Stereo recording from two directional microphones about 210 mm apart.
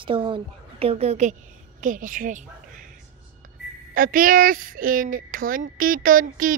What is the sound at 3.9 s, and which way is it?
A woman's voice, 40° right (ahead or behind).